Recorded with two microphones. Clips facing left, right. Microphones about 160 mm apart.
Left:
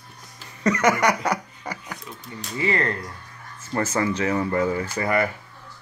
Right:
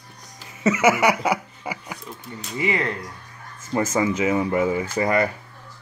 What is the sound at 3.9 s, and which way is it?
Speech, 10° right (ahead or behind).